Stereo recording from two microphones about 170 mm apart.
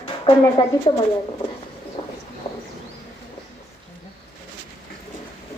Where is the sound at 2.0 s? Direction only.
35° left (ahead or behind).